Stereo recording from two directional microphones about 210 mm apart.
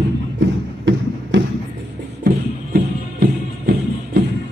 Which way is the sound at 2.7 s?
45° right (ahead or behind).